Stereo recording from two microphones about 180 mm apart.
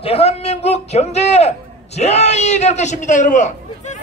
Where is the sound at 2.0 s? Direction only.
40° left (ahead or behind).